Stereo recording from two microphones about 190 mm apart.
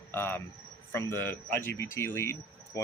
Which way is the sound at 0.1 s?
10° left (ahead or behind).